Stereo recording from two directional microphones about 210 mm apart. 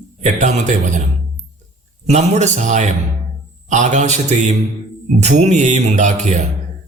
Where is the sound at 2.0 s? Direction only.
35° right (ahead or behind).